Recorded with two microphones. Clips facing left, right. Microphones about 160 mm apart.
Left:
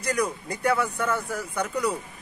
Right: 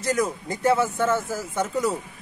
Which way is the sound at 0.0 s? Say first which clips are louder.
Right 2 dB; 25° right (ahead or behind).